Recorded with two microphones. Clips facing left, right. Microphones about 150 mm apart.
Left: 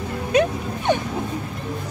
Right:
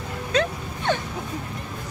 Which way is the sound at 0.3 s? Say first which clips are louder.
Left 5 dB; 15° left (ahead or behind).